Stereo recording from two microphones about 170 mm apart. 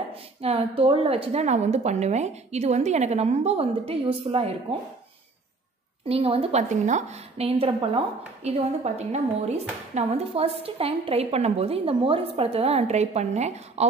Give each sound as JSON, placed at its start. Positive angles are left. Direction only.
{"t": 0.1, "sound": "a woman's voice", "side_deg": -35}
{"t": 6.0, "sound": "a woman's voice", "side_deg": -35}